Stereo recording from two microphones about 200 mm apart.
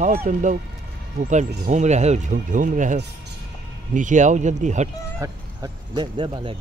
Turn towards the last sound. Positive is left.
turn(degrees=-25)  # may be behind; listen again after turning